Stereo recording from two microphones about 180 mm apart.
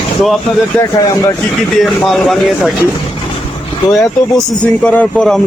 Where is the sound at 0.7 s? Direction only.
5° left (ahead or behind).